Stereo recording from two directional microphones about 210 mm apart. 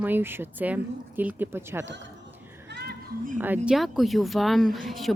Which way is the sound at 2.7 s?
50° right (ahead or behind).